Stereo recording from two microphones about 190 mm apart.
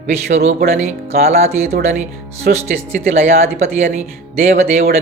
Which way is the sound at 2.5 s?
50° right (ahead or behind).